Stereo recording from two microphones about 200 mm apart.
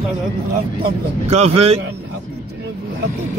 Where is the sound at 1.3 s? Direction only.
30° right (ahead or behind).